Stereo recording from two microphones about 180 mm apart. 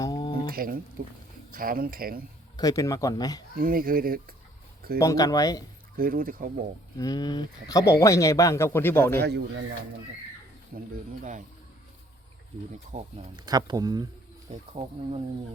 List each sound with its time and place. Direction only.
0.0 s a sound: 20° left (ahead or behind)
0.4 s speech: 55° right (ahead or behind)
2.6 s a man's voice: 20° left (ahead or behind)
3.6 s speech: 55° right (ahead or behind)
4.9 s a man's voice: 20° left (ahead or behind)
6.0 s speech: 50° right (ahead or behind)
6.9 s speech: 20° left (ahead or behind)
9.2 s speech: 80° right
10.7 s speech: 55° right (ahead or behind)
12.9 s speech: 40° right (ahead or behind)
13.3 s speech: 20° right (ahead or behind)
14.5 s speech: 35° right (ahead or behind)